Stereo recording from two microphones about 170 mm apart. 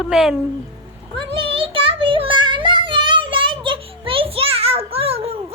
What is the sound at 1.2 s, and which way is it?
Child singing, 30° right (ahead or behind).